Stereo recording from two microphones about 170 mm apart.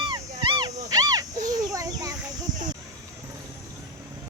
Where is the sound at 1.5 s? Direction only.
20° right (ahead or behind).